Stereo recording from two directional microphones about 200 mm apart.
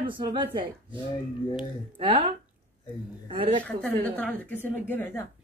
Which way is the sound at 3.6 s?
5° left (ahead or behind).